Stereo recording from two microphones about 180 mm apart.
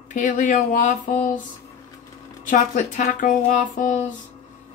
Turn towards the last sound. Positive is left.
turn(degrees=45)  # may be behind; listen again after turning